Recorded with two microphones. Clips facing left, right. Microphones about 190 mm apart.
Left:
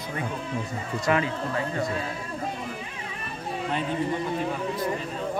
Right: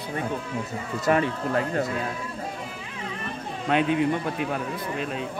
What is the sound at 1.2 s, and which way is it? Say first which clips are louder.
Speech: right 3 dB; 60° right (ahead or behind).